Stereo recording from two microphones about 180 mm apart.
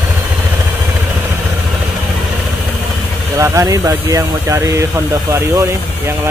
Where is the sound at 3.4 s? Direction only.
15° right (ahead or behind).